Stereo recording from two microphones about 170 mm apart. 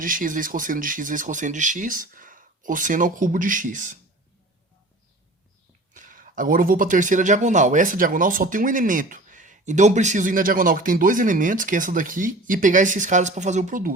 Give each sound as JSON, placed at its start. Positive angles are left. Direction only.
{"t": 0.0, "sound": "speech", "side_deg": -55}
{"t": 5.9, "sound": "speech", "side_deg": -50}